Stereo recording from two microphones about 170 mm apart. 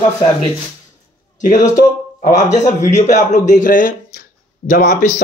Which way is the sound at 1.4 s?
50° left (ahead or behind).